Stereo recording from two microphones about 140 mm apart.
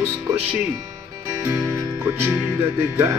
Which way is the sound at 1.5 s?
15° right (ahead or behind).